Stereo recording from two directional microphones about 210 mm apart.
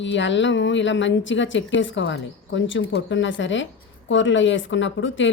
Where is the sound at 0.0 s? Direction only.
60° left (ahead or behind).